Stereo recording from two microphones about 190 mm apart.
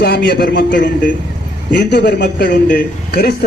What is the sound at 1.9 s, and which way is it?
A man's voice, 65° left (ahead or behind).